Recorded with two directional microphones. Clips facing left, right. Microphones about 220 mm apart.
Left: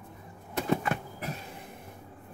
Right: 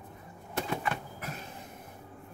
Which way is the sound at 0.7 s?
45° left (ahead or behind).